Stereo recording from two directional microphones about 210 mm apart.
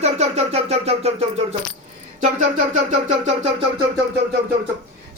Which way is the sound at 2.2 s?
35° right (ahead or behind).